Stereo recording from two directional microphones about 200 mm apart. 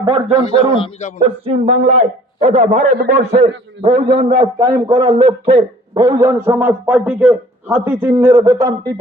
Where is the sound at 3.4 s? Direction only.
25° right (ahead or behind).